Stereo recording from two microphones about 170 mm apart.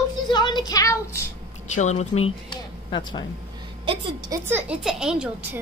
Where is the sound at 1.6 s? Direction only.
45° left (ahead or behind); by 3.2 s 25° left (ahead or behind).